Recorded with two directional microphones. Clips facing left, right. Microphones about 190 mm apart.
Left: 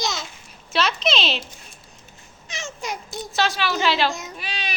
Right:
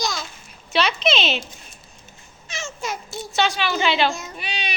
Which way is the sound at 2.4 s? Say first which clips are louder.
Right 1 dB; 15° left (ahead or behind).